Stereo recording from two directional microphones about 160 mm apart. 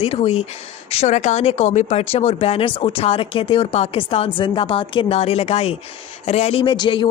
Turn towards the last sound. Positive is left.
turn(degrees=30)  # may be behind; listen again after turning